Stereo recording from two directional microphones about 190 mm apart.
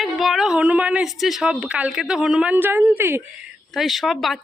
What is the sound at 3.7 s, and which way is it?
Speech, centre (ahead or behind).